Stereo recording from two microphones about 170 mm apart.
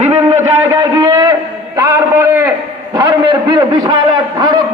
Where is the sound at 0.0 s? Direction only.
35° right (ahead or behind).